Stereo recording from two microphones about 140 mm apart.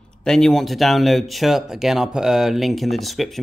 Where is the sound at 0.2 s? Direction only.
5° left (ahead or behind).